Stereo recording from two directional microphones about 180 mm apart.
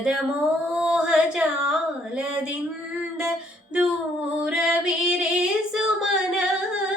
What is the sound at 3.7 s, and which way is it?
Female singing, 5° right (ahead or behind).